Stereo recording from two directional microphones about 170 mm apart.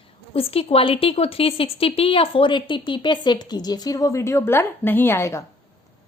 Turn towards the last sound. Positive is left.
turn(degrees=15)  # may be behind; listen again after turning